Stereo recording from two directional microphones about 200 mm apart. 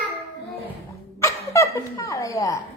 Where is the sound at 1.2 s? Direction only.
15° left (ahead or behind).